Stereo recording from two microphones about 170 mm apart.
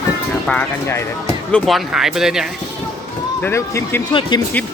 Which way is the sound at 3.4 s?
15° left (ahead or behind).